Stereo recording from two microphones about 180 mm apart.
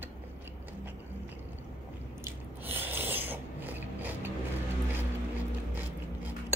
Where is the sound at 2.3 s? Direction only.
10° right (ahead or behind).